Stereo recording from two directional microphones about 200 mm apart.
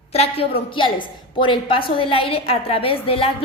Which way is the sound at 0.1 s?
30° left (ahead or behind).